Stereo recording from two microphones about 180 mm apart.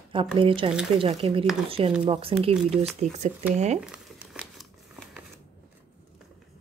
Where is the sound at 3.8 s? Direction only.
5° right (ahead or behind).